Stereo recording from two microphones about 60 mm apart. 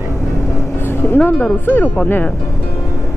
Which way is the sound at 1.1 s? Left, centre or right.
Left.